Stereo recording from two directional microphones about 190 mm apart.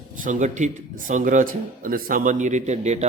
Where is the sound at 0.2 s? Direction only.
40° right (ahead or behind).